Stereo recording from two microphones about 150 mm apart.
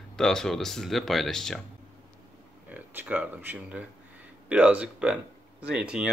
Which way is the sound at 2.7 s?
10° right (ahead or behind).